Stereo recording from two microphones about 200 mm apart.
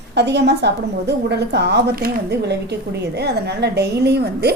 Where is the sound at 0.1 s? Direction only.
55° right (ahead or behind).